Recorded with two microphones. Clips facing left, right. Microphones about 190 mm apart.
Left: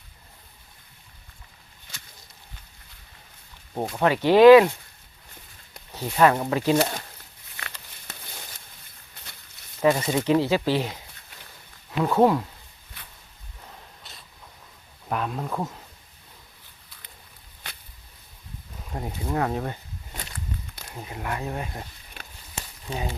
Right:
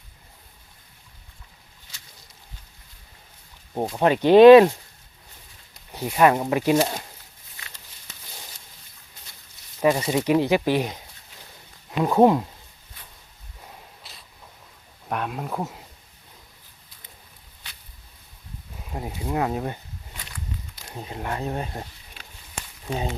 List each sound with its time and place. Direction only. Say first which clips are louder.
3.8 s speech: right 2 dB; 20° right (ahead or behind)
5.9 s speech: right 1 dB; 15° right (ahead or behind)
7.5 s a sound: left 6 dB; 65° left (ahead or behind)
9.2 s a sound: left 4 dB; 60° left (ahead or behind)
9.8 s speech: right 1 dB; 15° right (ahead or behind)
14.0 s a sound: even; centre (ahead or behind)
15.1 s speech: even; 5° right (ahead or behind)
18.9 s speech: right 1 dB; 15° right (ahead or behind)
20.9 s speech: right 2 dB; 25° right (ahead or behind)
22.9 s speech: right 3 dB; 25° right (ahead or behind)